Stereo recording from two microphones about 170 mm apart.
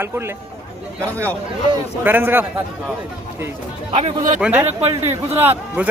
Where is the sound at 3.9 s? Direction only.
40° right (ahead or behind).